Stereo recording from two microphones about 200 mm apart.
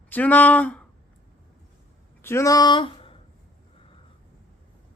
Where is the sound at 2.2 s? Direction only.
15° left (ahead or behind).